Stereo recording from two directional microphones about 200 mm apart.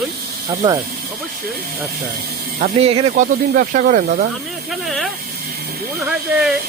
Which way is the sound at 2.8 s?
30° right (ahead or behind).